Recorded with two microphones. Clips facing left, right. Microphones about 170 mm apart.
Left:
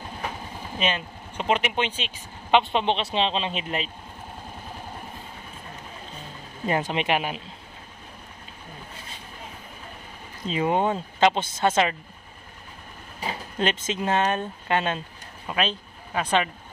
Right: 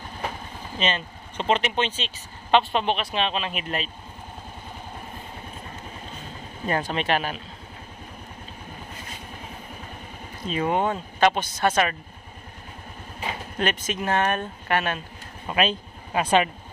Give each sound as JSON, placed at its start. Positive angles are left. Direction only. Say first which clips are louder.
{"t": 0.7, "sound": "speech", "louder": "even", "side_deg": 10}
{"t": 6.6, "sound": "speech", "louder": "left 1 dB", "side_deg": 20}
{"t": 10.4, "sound": "speech", "louder": "left 1 dB", "side_deg": 20}
{"t": 13.6, "sound": "speech", "louder": "left 1 dB", "side_deg": 20}
{"t": 15.4, "sound": "speech", "louder": "right 3 dB", "side_deg": -5}